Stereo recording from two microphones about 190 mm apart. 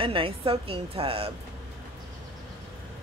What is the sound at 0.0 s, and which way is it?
Speech, 30° right (ahead or behind).